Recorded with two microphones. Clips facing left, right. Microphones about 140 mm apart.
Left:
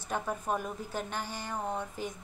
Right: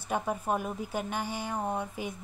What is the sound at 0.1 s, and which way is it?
Speech, 10° right (ahead or behind).